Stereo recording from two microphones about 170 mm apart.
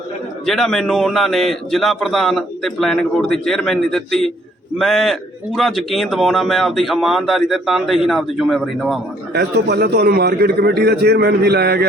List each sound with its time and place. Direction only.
0.4 s a man's voice: centre (ahead or behind)
9.3 s a man's voice: 75° right (ahead or behind)